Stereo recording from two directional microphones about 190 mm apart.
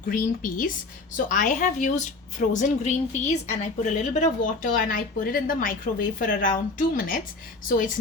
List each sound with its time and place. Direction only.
0.1 s a woman's voice: 45° left (ahead or behind)